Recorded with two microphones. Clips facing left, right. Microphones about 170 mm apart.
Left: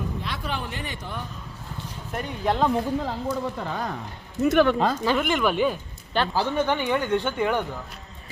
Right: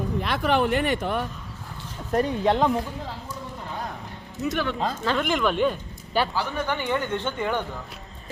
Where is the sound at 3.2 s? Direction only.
85° left.